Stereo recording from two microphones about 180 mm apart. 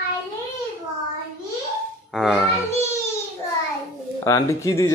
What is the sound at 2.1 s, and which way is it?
Speech, centre (ahead or behind).